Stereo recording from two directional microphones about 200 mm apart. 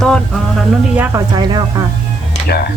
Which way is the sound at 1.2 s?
20° right (ahead or behind).